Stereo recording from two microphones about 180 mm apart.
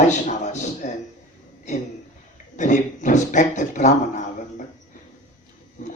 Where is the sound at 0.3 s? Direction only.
40° left (ahead or behind).